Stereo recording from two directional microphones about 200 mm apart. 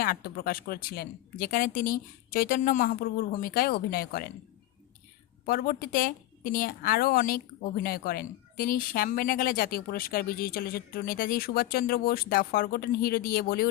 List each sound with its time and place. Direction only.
0.0 s a woman's voice: 45° left (ahead or behind)
5.5 s a woman's voice: 45° left (ahead or behind)